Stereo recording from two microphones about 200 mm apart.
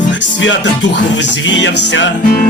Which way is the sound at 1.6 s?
65° left (ahead or behind).